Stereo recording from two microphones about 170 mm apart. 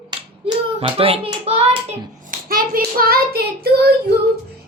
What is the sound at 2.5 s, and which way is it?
Child singing, 60° right (ahead or behind).